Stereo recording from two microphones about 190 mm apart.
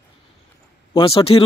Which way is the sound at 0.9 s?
25° left (ahead or behind).